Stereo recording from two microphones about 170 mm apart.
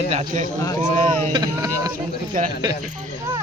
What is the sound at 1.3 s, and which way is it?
Speech, 25° right (ahead or behind).